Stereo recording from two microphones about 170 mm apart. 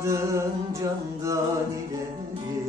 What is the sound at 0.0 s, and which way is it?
Music, 20° right (ahead or behind).